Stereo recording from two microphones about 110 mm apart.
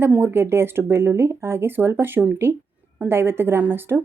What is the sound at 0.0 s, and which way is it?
A woman's voice, 20° right (ahead or behind).